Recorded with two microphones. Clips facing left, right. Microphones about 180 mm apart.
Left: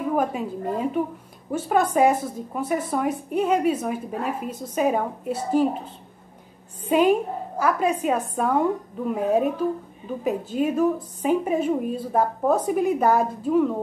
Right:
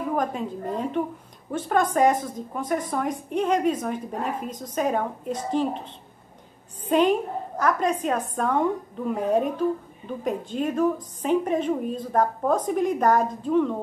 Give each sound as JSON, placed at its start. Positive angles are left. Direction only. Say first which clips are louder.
{"t": 0.1, "sound": "a woman's voice", "louder": "left 3 dB", "side_deg": 5}
{"t": 6.9, "sound": "a woman's voice", "louder": "left 2 dB", "side_deg": 10}